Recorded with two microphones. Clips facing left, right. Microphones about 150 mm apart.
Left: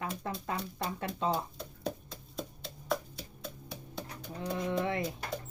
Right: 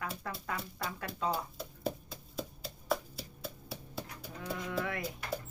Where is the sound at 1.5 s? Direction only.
5° right (ahead or behind).